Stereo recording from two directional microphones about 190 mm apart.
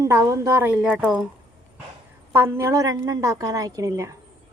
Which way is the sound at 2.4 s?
15° right (ahead or behind).